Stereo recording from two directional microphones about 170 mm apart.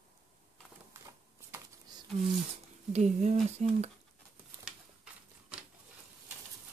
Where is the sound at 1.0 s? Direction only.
20° right (ahead or behind).